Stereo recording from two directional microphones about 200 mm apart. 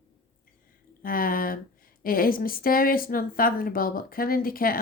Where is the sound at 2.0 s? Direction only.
45° left (ahead or behind).